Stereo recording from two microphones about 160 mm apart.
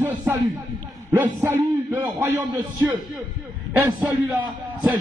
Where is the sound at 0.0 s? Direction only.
15° right (ahead or behind).